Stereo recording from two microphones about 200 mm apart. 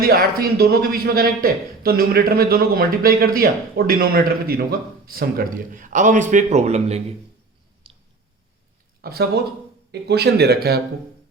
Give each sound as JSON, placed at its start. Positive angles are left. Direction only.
{"t": 0.0, "sound": "a man's voice", "side_deg": -50}
{"t": 7.9, "sound": "a sound", "side_deg": -25}
{"t": 9.0, "sound": "speech", "side_deg": -50}